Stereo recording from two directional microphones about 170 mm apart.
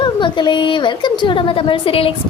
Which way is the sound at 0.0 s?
25° left (ahead or behind).